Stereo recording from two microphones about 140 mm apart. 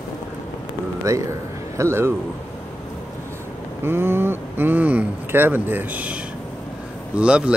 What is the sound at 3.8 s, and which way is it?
Speech, 15° right (ahead or behind).